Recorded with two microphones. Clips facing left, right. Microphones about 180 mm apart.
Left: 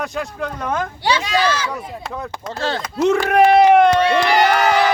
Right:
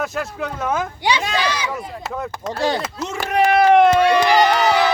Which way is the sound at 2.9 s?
60° left (ahead or behind).